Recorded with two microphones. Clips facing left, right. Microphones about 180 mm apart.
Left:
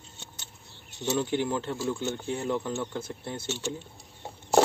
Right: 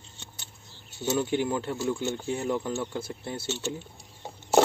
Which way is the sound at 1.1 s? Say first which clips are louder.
Right 1 dB; 10° right (ahead or behind).